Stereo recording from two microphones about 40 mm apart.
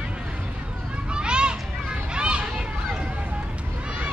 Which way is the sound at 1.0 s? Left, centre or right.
Right.